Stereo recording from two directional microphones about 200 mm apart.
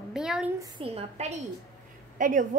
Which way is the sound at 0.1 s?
5° right (ahead or behind).